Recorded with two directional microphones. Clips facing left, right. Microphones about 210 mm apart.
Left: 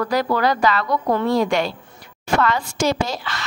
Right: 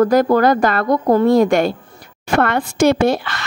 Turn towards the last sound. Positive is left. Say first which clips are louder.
# right 8 dB
turn(degrees=-60)  # may be behind; listen again after turning